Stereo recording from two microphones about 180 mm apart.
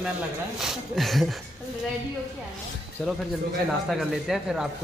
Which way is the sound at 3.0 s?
5° left (ahead or behind).